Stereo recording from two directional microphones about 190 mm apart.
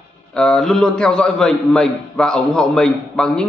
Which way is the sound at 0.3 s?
5° left (ahead or behind).